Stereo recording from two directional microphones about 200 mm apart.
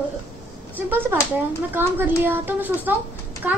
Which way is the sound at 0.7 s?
10° right (ahead or behind).